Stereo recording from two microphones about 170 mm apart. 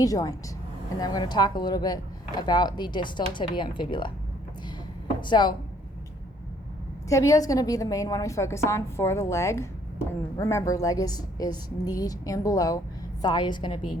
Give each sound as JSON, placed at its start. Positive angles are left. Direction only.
{"t": 0.0, "sound": "a woman's voice", "side_deg": 20}
{"t": 5.2, "sound": "a woman's voice", "side_deg": 25}
{"t": 7.1, "sound": "a woman's voice", "side_deg": 20}